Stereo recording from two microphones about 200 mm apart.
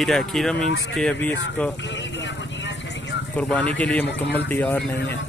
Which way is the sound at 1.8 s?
65° left (ahead or behind).